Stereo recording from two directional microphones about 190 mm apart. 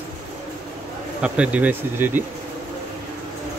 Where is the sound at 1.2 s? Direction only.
5° right (ahead or behind).